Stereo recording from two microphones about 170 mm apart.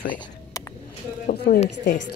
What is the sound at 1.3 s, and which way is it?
Speech, 60° left (ahead or behind).